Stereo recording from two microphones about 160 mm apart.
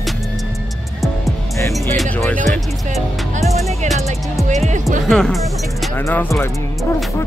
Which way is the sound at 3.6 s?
45° right (ahead or behind).